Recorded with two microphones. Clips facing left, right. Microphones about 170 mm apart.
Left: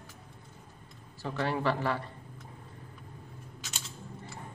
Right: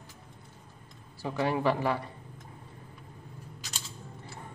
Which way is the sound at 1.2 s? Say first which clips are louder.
Right 3 dB; 15° right (ahead or behind).